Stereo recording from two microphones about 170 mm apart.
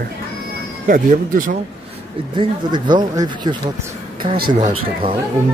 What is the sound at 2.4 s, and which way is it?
Speech, 25° right (ahead or behind).